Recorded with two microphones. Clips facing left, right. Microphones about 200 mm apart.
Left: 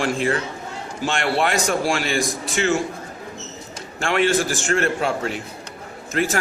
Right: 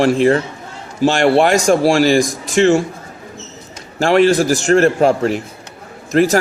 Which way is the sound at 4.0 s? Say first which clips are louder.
Right 8 dB; 40° right (ahead or behind).